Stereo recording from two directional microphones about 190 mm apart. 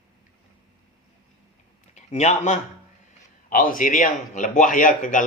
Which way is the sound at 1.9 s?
35° left (ahead or behind).